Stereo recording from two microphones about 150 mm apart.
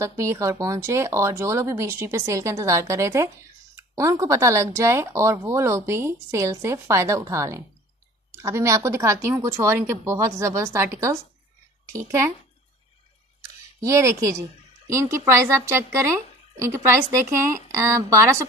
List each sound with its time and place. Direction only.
0.0 s speech: 20° right (ahead or behind)
13.4 s a sound: 20° right (ahead or behind)
14.9 s speech: 20° right (ahead or behind)